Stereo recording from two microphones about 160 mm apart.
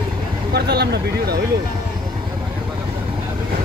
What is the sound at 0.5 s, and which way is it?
Speech, 90° right.